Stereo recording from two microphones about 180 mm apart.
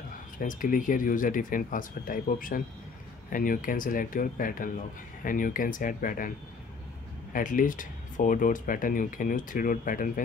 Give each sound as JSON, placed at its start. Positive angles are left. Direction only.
{"t": 0.4, "sound": "speech", "side_deg": 50}
{"t": 7.3, "sound": "speech", "side_deg": 50}